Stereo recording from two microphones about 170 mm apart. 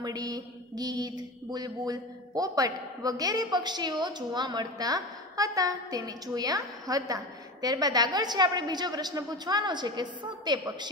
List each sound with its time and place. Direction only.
0.0 s a woman's voice: 20° right (ahead or behind)